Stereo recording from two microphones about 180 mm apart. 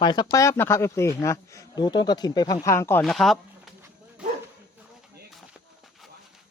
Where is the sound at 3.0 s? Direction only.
Centre (ahead or behind).